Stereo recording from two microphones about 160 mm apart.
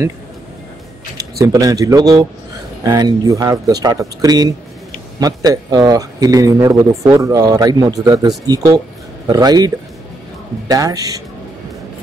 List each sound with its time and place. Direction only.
1.1 s speech: 20° right (ahead or behind)
10.7 s speech: 20° right (ahead or behind)